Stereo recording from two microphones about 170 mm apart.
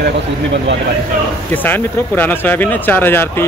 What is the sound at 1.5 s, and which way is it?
Speech, 10° left (ahead or behind).